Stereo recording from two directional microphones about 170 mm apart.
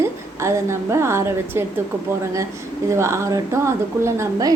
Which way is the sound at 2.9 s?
15° right (ahead or behind).